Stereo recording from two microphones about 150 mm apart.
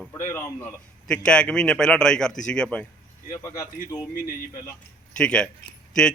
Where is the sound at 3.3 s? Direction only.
25° left (ahead or behind).